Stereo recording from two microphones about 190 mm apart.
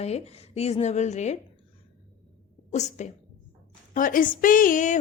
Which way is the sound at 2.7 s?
35° left (ahead or behind).